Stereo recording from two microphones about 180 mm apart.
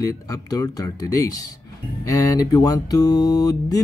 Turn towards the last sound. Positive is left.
turn(degrees=20)  # may be behind; listen again after turning